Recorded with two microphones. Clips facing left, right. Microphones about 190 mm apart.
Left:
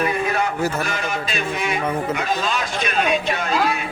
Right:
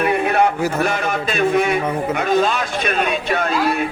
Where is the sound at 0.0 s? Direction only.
60° right (ahead or behind).